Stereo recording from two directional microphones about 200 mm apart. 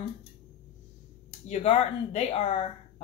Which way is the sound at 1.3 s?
35° left (ahead or behind).